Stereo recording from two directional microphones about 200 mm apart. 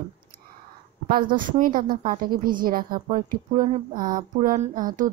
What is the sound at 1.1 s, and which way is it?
A woman's voice, 45° right (ahead or behind).